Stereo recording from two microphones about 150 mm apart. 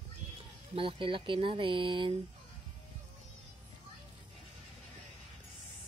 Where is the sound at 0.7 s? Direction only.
35° right (ahead or behind).